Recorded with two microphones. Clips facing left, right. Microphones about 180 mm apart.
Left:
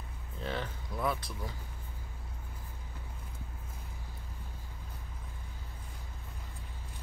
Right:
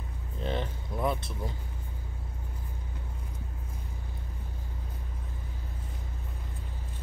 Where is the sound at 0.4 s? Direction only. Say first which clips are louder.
Right 4 dB; 20° right (ahead or behind).